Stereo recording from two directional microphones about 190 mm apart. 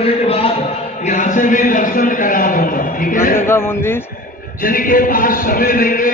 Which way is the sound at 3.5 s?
15° left (ahead or behind).